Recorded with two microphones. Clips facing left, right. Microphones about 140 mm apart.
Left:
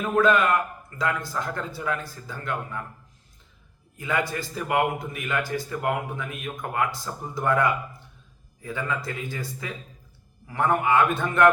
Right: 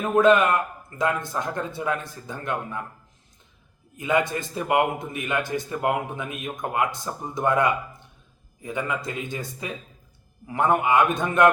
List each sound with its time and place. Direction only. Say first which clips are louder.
0.0 s a man's voice: right 3 dB; 20° right (ahead or behind)
3.9 s a man's voice: right 4 dB; 20° right (ahead or behind)